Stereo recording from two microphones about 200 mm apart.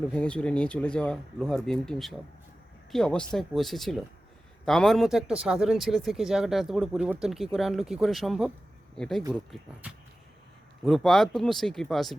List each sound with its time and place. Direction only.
0.1 s speech: 5° left (ahead or behind)